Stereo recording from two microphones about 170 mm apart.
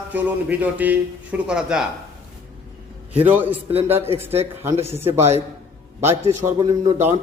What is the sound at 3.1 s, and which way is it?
A man's voice, 10° right (ahead or behind).